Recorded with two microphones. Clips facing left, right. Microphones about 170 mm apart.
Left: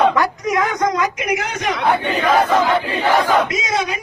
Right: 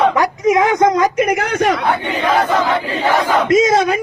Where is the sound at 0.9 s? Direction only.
45° right (ahead or behind).